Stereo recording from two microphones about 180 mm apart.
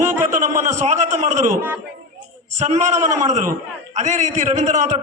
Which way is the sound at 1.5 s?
10° right (ahead or behind).